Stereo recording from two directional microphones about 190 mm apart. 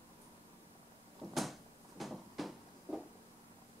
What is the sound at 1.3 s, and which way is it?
Cupboard open or close, centre (ahead or behind).